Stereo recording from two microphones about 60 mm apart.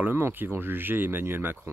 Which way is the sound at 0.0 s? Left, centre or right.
Right.